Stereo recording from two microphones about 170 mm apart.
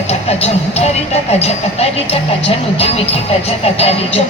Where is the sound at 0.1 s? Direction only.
35° left (ahead or behind).